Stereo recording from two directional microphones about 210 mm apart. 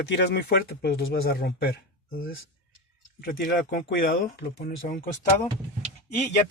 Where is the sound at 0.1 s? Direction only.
55° left (ahead or behind).